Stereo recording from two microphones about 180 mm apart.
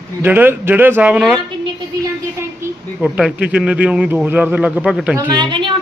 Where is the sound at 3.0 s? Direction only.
5° right (ahead or behind).